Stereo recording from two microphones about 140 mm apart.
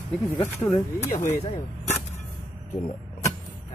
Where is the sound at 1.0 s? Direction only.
55° left (ahead or behind).